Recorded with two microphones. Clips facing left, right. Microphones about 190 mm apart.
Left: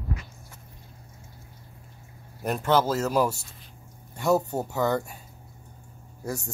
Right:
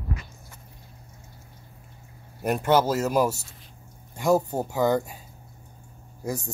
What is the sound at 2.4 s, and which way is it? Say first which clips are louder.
Speech: right 2 dB; 10° right (ahead or behind).